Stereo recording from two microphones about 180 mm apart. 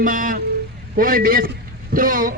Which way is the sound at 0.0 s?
50° right (ahead or behind).